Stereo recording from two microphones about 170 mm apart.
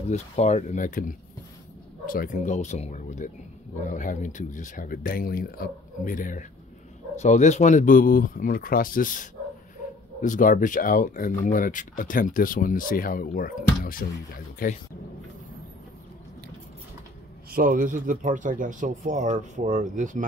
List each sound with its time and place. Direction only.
0.1 s speech: 40° left (ahead or behind)
2.1 s speech: 50° left (ahead or behind)
17.5 s speech: 55° right (ahead or behind)